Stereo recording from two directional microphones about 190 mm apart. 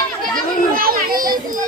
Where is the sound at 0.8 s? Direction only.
50° right (ahead or behind).